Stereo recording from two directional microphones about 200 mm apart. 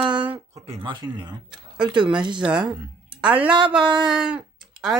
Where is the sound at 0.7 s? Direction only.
25° right (ahead or behind).